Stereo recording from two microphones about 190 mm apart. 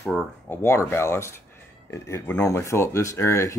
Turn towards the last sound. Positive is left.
turn(degrees=15)  # may be behind; listen again after turning